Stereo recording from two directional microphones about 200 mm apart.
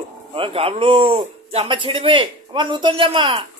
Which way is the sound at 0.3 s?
30° right (ahead or behind).